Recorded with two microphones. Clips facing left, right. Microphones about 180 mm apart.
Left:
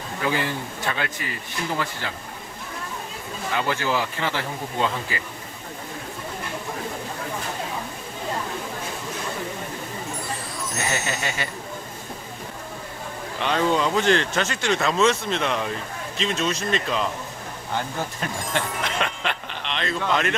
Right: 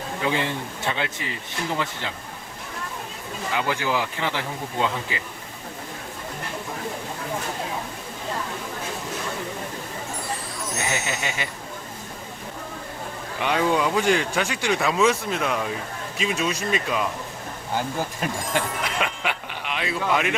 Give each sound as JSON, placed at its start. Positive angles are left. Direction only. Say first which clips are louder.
{"t": 0.2, "sound": "a man's voice", "louder": "even", "side_deg": -25}
{"t": 3.5, "sound": "speech", "louder": "even", "side_deg": -10}
{"t": 10.8, "sound": "speech", "louder": "left 1 dB", "side_deg": -15}
{"t": 13.4, "sound": "speech", "louder": "even", "side_deg": -10}